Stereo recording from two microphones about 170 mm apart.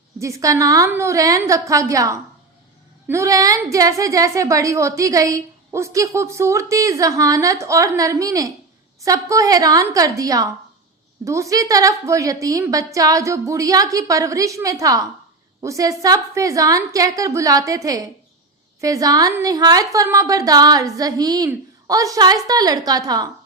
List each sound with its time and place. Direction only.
0.2 s a woman's voice: 20° right (ahead or behind)